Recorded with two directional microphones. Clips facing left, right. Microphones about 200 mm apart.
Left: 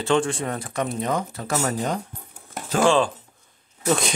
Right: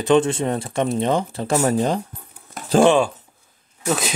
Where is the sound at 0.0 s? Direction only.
20° right (ahead or behind).